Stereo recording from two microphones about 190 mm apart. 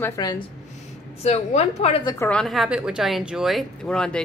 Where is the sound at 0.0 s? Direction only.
20° left (ahead or behind).